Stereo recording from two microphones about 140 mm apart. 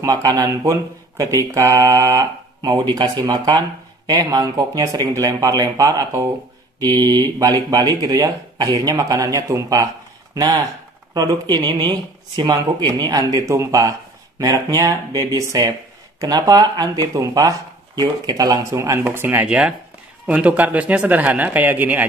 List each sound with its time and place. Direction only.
0.0 s speech: 25° right (ahead or behind); by 22.0 s 10° right (ahead or behind)